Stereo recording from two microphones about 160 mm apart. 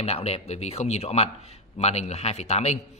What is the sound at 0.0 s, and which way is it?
Speech, 40° left (ahead or behind).